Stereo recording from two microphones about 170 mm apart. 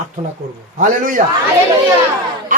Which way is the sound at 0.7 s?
50° right (ahead or behind).